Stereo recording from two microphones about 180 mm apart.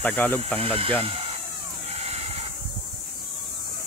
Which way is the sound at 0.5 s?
30° right (ahead or behind).